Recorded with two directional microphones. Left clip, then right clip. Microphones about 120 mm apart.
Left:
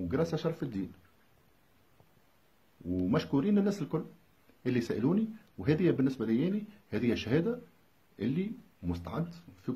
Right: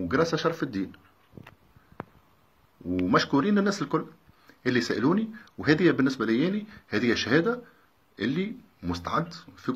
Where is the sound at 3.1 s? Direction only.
35° left (ahead or behind).